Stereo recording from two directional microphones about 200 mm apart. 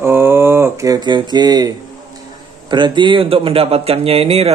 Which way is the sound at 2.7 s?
25° right (ahead or behind).